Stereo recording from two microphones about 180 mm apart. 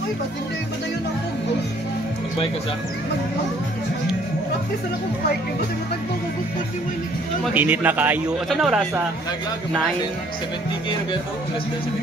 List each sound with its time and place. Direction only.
7.5 s speech: 10° right (ahead or behind)